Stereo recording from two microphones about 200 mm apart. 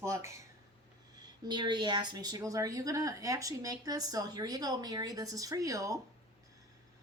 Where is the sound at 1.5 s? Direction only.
20° right (ahead or behind).